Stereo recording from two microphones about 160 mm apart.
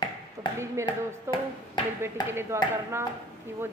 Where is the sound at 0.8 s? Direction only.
30° left (ahead or behind).